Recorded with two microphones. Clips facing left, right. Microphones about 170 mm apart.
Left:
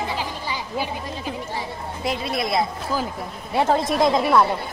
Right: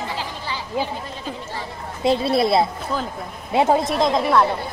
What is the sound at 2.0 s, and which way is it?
Speech, 30° right (ahead or behind).